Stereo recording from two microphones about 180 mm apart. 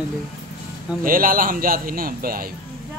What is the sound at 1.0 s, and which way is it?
A man's voice, 50° right (ahead or behind).